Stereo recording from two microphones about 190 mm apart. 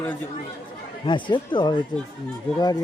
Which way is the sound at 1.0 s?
25° left (ahead or behind).